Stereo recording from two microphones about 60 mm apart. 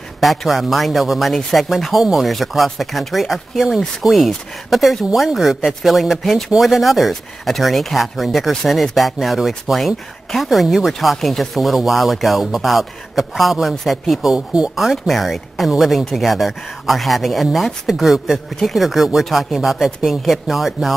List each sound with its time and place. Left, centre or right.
0.2 s speech: centre
14.3 s speech: centre
14.8 s speech: centre